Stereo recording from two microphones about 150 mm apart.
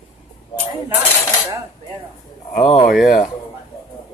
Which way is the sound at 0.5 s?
35° left (ahead or behind).